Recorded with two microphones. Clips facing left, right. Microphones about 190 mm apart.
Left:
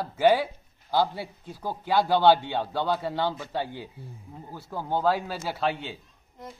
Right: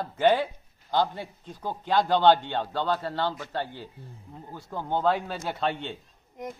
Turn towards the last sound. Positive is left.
turn(degrees=-15)  # may be behind; listen again after turning